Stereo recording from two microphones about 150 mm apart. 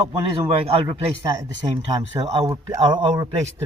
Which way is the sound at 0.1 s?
40° right (ahead or behind).